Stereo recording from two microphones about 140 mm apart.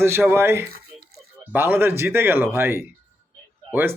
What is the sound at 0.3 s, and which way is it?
Speech, 15° right (ahead or behind).